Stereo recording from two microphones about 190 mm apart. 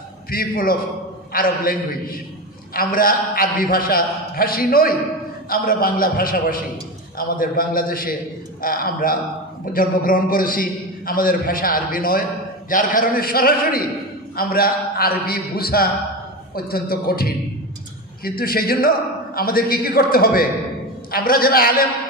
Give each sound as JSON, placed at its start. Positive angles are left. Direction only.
{"t": 0.3, "sound": "a man's voice", "side_deg": 50}